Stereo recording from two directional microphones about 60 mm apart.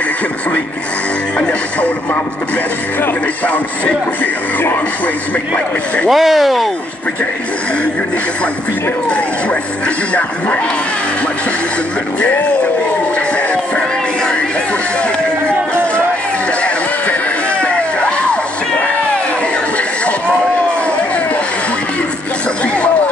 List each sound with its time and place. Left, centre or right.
3.0 s speech: left
6.0 s speech: centre
16.6 s music: left